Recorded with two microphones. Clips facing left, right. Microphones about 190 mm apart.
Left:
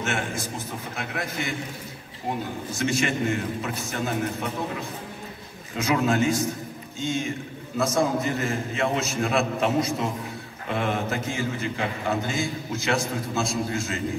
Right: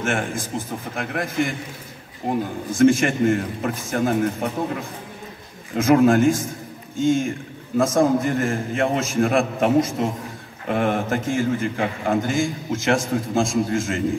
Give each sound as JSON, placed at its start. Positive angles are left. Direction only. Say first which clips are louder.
{"t": 0.0, "sound": "a man's voice", "louder": "right 4 dB", "side_deg": -50}